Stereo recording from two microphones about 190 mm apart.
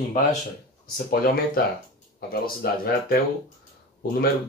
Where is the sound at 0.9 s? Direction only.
50° left (ahead or behind).